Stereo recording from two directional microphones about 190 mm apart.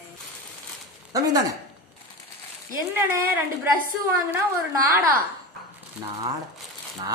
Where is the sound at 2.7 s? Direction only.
10° right (ahead or behind).